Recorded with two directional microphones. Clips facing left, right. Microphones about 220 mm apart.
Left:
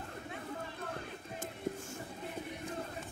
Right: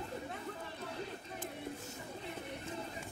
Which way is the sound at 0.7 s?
55° left (ahead or behind).